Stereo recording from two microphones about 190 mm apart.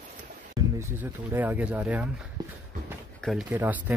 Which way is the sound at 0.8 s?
10° right (ahead or behind).